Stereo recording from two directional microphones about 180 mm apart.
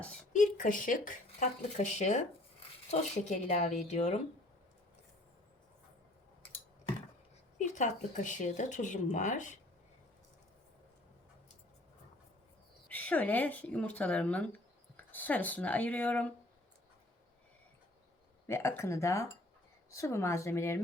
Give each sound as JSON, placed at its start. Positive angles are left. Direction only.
{"t": 0.3, "sound": "speech", "side_deg": 45}
{"t": 7.6, "sound": "speech", "side_deg": 40}
{"t": 12.9, "sound": "speech", "side_deg": 10}
{"t": 18.4, "sound": "speech", "side_deg": 15}